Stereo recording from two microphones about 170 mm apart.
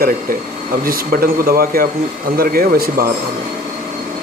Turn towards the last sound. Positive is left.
turn(degrees=-60)  # may be behind; listen again after turning